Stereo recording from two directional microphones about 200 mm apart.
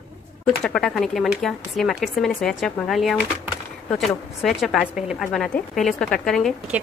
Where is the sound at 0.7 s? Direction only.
Centre (ahead or behind).